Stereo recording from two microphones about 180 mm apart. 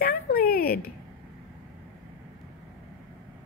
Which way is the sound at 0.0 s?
55° left (ahead or behind).